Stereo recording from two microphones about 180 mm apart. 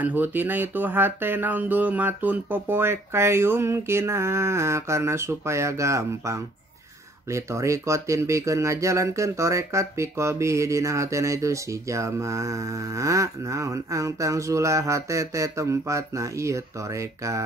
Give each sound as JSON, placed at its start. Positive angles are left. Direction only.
{"t": 0.0, "sound": "speech", "side_deg": -10}